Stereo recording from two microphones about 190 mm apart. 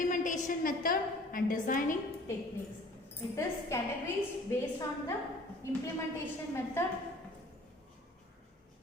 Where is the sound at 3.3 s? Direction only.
15° left (ahead or behind).